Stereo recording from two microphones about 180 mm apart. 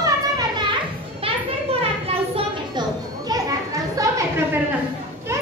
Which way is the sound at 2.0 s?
35° right (ahead or behind).